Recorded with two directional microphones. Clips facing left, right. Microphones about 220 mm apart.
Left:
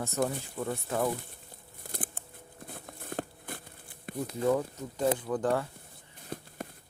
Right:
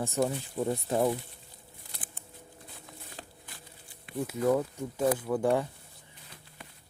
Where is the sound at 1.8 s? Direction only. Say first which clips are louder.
Left 11 dB; 50° left (ahead or behind).